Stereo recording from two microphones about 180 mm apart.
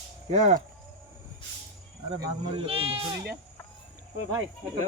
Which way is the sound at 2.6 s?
30° right (ahead or behind).